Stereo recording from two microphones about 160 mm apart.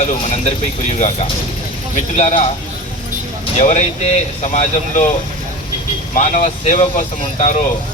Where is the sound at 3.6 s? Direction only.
50° left (ahead or behind).